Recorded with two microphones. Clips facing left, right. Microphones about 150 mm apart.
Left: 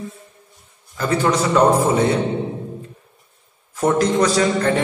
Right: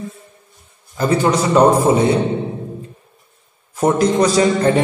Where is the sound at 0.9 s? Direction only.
25° right (ahead or behind).